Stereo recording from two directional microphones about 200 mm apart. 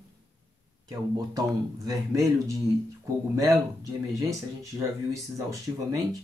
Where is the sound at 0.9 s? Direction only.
15° right (ahead or behind).